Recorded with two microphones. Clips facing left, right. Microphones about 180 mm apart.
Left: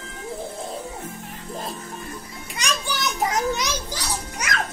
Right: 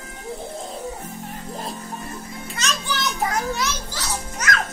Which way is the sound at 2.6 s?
15° left (ahead or behind).